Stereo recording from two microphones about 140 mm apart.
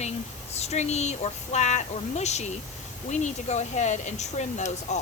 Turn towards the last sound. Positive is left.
turn(degrees=55)  # may be behind; listen again after turning